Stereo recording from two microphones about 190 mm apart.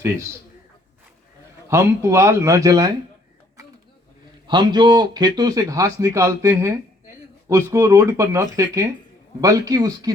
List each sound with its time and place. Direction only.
1.6 s speech: 15° right (ahead or behind)
4.4 s a man's voice: 25° right (ahead or behind)